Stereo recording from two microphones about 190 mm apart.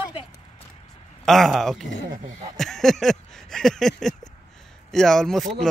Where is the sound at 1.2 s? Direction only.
Centre (ahead or behind).